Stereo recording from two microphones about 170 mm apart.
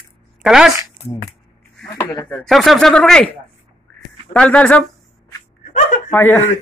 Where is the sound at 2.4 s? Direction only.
Centre (ahead or behind).